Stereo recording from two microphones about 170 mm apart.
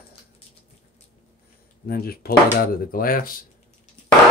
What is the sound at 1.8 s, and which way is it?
Speech, 65° left (ahead or behind).